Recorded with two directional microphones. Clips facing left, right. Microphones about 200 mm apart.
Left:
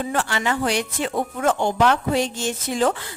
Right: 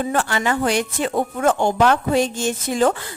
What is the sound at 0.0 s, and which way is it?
Speech, 45° right (ahead or behind).